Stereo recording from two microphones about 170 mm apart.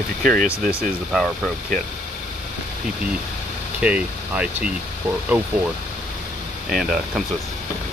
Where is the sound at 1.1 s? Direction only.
5° left (ahead or behind).